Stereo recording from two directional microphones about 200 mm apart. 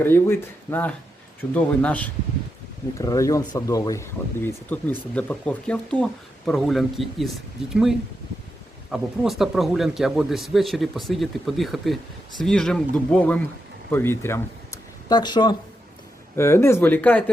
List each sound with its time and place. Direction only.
0.0 s speech: 10° left (ahead or behind)